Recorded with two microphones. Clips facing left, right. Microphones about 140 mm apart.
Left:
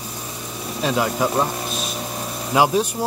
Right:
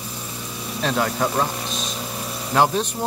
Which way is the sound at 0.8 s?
5° left (ahead or behind).